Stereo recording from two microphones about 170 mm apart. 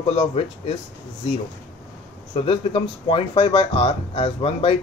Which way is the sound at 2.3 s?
30° left (ahead or behind).